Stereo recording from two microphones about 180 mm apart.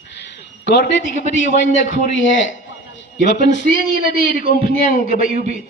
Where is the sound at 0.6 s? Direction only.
75° left (ahead or behind).